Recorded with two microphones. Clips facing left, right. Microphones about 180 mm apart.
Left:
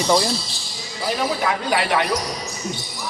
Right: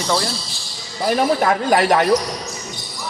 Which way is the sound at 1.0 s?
45° right (ahead or behind).